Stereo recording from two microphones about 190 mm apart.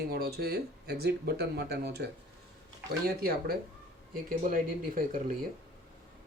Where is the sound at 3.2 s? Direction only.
55° right (ahead or behind).